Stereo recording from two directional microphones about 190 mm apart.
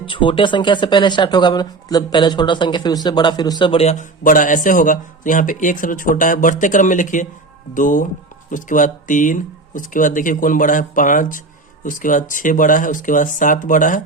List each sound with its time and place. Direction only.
0.0 s speech: 25° left (ahead or behind); by 14.0 s 45° left (ahead or behind)